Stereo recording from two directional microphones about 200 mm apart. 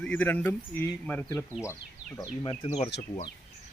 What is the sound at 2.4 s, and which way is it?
Speech, 30° left (ahead or behind).